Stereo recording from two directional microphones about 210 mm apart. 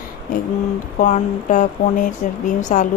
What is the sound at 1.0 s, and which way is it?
Speech, 35° left (ahead or behind).